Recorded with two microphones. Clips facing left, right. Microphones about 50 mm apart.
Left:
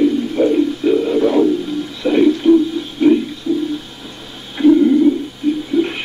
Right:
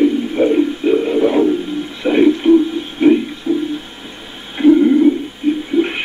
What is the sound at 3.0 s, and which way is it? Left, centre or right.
Music, right.